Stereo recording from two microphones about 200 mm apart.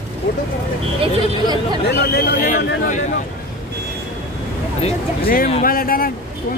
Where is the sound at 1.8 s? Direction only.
55° left (ahead or behind).